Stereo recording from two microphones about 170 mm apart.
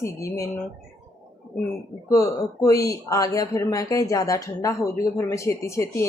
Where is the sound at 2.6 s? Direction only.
20° left (ahead or behind).